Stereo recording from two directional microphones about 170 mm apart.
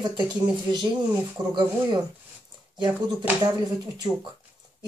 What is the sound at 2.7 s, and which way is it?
Speech, 25° right (ahead or behind).